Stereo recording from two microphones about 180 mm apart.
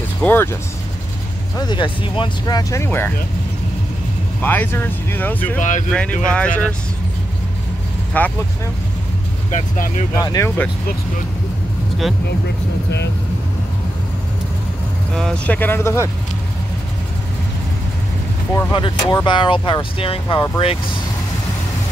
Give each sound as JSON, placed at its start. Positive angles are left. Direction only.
{"t": 0.2, "sound": "speech", "side_deg": 10}
{"t": 1.6, "sound": "speech", "side_deg": 25}
{"t": 4.4, "sound": "speech", "side_deg": 10}
{"t": 5.6, "sound": "speech", "side_deg": 45}
{"t": 5.9, "sound": "speech", "side_deg": 5}
{"t": 8.2, "sound": "speech", "side_deg": 10}
{"t": 9.5, "sound": "speech", "side_deg": 40}
{"t": 10.1, "sound": "speech", "side_deg": 20}
{"t": 15.1, "sound": "speech", "side_deg": 5}
{"t": 18.5, "sound": "speech", "side_deg": 15}
{"t": 18.8, "sound": "speech", "side_deg": 25}